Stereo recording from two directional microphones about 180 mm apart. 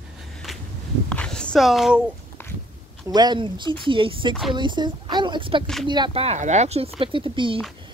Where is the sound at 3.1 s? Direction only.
25° right (ahead or behind).